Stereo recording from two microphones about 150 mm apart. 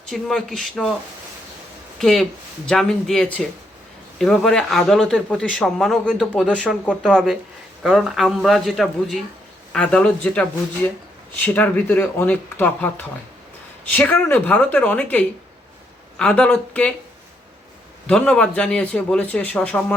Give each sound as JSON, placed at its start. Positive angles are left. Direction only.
{"t": 0.0, "sound": "speech", "side_deg": 5}
{"t": 2.0, "sound": "a man's voice", "side_deg": 5}
{"t": 13.9, "sound": "a man's voice", "side_deg": 10}
{"t": 18.0, "sound": "a man's voice", "side_deg": 5}